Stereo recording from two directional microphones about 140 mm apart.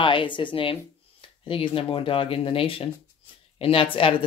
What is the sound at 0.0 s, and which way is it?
Speech, 35° left (ahead or behind).